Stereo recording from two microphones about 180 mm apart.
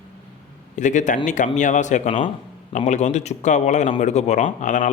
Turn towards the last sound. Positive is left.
turn(degrees=45)  # may be behind; listen again after turning